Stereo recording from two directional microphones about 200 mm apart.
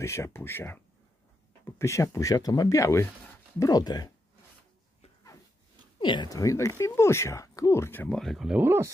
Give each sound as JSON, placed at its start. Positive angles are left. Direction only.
{"t": 0.0, "sound": "speech", "side_deg": 15}
{"t": 1.8, "sound": "speech", "side_deg": 15}
{"t": 5.9, "sound": "speech", "side_deg": 25}